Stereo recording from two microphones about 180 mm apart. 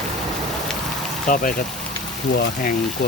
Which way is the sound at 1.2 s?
45° left (ahead or behind).